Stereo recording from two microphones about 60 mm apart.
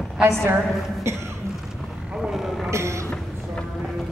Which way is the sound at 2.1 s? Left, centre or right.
Centre.